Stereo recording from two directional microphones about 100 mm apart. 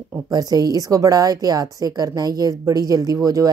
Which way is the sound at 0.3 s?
40° right (ahead or behind).